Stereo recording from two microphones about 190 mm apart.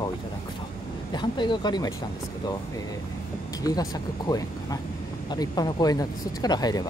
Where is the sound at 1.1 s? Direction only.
25° left (ahead or behind).